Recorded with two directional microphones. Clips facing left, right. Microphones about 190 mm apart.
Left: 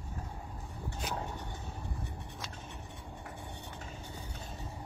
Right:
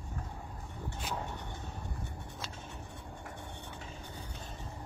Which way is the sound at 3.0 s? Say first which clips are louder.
Even; centre (ahead or behind).